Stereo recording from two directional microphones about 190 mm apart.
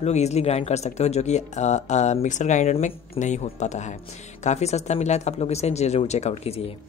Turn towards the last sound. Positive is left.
turn(degrees=35)  # may be behind; listen again after turning